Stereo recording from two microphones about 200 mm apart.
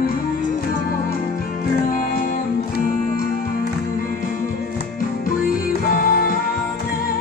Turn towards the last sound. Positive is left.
turn(degrees=45)  # may be behind; listen again after turning